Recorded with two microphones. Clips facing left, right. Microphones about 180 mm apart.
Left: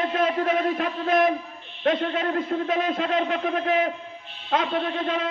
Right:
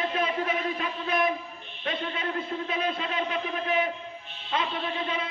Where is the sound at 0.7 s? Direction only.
55° left (ahead or behind); by 3.8 s 80° left.